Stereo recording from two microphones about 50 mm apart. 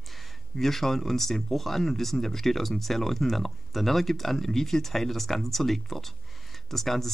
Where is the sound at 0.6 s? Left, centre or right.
Centre.